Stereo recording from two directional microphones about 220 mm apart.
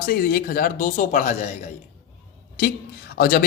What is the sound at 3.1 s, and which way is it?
Speech, 45° left (ahead or behind).